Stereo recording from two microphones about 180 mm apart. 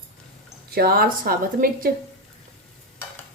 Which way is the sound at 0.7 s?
55° right (ahead or behind).